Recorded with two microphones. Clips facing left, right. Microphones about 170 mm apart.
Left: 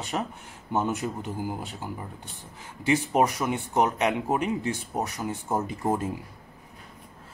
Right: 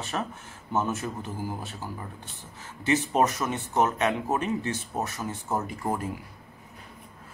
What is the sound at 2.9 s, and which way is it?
Speech, 10° left (ahead or behind).